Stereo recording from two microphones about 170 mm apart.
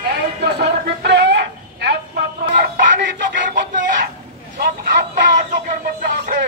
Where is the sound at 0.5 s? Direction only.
80° right.